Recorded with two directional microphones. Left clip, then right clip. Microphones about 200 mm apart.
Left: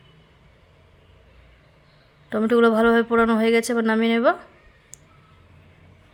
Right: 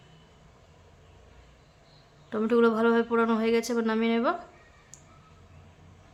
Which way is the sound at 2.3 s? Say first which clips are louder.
Left 6 dB; 25° left (ahead or behind).